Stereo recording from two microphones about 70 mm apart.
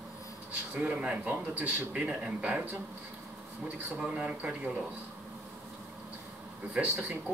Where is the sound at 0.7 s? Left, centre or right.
Right.